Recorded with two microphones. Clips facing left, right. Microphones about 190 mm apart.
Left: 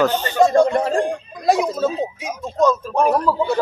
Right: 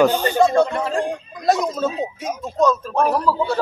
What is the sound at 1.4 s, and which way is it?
A man's voice, 10° left (ahead or behind).